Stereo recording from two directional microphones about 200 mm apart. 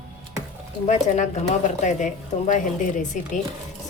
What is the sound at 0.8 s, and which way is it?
A woman's voice, 35° left (ahead or behind).